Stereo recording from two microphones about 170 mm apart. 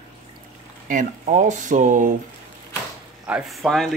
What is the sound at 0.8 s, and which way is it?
Speech, 50° right (ahead or behind).